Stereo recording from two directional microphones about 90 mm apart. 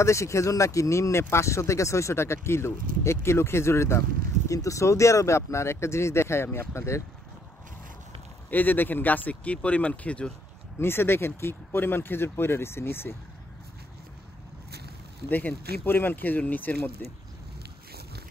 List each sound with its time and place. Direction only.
0.0 s speech: 35° left (ahead or behind)
8.5 s speech: 20° left (ahead or behind)
10.8 s speech: 25° left (ahead or behind)
15.2 s speech: 20° left (ahead or behind)